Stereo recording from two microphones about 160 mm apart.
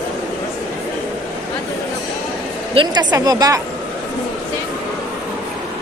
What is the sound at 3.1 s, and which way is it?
Speech, 25° right (ahead or behind).